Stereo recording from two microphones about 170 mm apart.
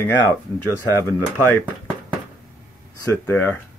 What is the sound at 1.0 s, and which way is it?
Speech, 10° left (ahead or behind).